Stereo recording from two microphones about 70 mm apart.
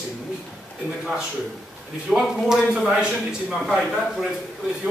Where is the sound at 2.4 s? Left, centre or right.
Centre.